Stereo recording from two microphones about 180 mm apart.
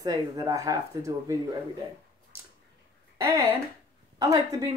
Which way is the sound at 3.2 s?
15° right (ahead or behind).